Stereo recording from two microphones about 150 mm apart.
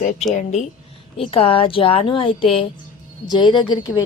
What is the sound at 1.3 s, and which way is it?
A woman's voice, 40° left (ahead or behind).